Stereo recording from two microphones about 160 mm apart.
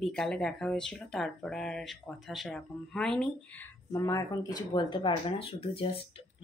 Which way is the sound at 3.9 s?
20° left (ahead or behind).